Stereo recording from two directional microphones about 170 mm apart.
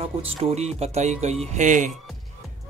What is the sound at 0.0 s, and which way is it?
Speech, 35° right (ahead or behind).